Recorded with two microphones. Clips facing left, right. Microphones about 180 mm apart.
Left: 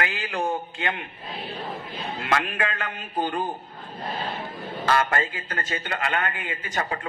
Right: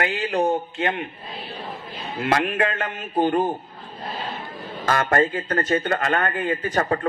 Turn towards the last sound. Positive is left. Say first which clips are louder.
# right 7 dB
turn(degrees=-45)  # may be behind; listen again after turning